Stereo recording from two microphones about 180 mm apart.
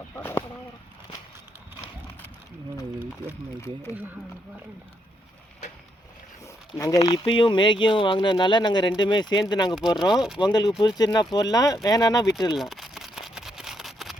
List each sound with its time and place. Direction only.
0.2 s a sound: 10° left (ahead or behind)
3.9 s speech: 10° right (ahead or behind)
6.7 s speech: 20° left (ahead or behind)
10.2 s speech: 5° right (ahead or behind)
10.4 s speech: 25° left (ahead or behind)
12.5 s a sound: centre (ahead or behind)